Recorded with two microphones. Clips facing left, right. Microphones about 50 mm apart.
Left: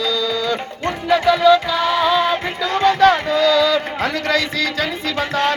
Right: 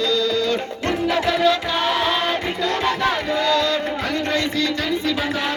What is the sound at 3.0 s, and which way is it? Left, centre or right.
Music, left.